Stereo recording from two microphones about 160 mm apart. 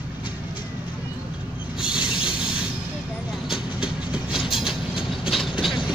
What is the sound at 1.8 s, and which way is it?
Train, 5° right (ahead or behind).